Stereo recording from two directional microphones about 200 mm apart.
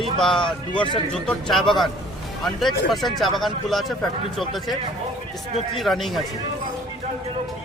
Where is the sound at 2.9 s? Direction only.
Centre (ahead or behind).